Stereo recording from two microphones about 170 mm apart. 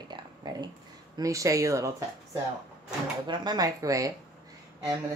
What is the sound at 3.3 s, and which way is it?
Speech, 25° right (ahead or behind).